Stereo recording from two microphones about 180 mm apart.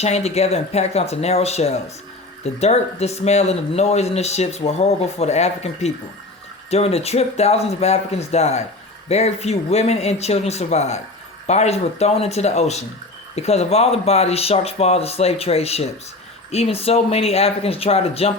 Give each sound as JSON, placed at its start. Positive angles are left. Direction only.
{"t": 0.0, "sound": "speech", "side_deg": 35}